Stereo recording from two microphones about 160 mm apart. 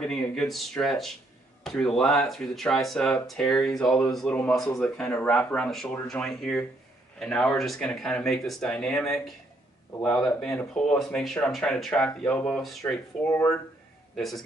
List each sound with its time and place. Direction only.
0.0 s speech: 5° left (ahead or behind)
13.3 s speech: 20° left (ahead or behind)
14.1 s speech: centre (ahead or behind)